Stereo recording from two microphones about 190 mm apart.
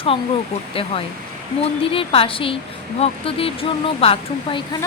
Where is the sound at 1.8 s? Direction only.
30° left (ahead or behind).